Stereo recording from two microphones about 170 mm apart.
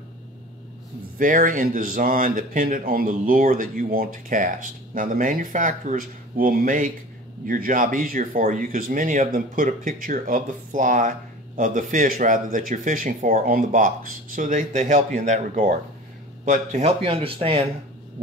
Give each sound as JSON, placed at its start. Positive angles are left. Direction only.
{"t": 1.1, "sound": "speech", "side_deg": -55}